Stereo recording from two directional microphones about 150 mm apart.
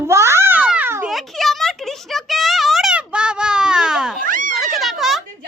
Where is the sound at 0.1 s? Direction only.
20° right (ahead or behind).